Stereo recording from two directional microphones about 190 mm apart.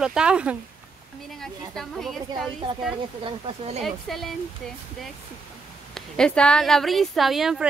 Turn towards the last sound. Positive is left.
turn(degrees=0)  # may be behind; listen again after turning